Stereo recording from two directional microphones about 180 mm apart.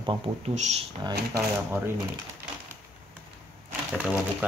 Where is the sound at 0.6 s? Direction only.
40° right (ahead or behind).